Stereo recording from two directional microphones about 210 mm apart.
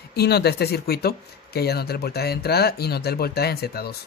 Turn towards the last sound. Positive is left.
turn(degrees=50)  # may be behind; listen again after turning